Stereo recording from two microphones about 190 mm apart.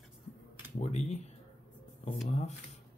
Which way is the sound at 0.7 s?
35° left (ahead or behind).